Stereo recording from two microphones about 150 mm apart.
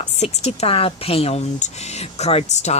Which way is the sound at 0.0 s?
45° left (ahead or behind).